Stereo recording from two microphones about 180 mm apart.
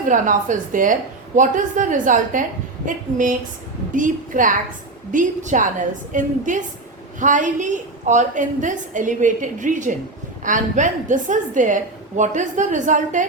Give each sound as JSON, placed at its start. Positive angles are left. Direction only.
{"t": 0.0, "sound": "a woman's voice", "side_deg": -45}